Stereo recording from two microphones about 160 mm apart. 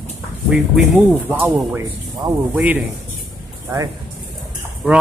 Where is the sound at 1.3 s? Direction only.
15° right (ahead or behind).